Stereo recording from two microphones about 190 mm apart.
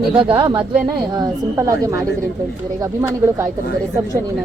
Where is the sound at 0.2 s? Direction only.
25° right (ahead or behind).